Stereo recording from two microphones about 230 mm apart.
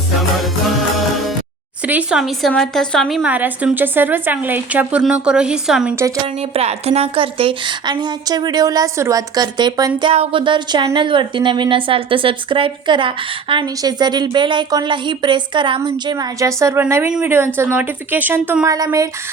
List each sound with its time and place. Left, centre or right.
1.9 s a woman's voice: centre
6.1 s a woman's voice: right